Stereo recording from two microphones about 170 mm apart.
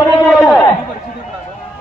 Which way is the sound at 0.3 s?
Centre (ahead or behind).